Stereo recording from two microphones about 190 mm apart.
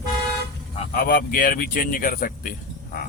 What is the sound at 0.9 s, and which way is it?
Speech, 50° left (ahead or behind).